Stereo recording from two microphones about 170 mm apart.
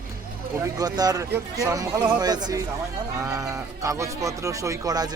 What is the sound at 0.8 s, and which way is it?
Speech, 20° right (ahead or behind).